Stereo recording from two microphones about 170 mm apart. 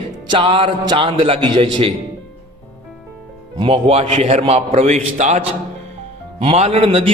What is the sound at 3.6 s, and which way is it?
A man's voice, 35° right (ahead or behind).